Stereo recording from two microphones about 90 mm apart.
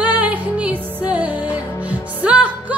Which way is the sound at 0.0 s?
15° right (ahead or behind).